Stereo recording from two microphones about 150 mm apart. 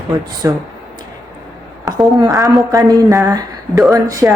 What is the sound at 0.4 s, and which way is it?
Speech, 20° right (ahead or behind).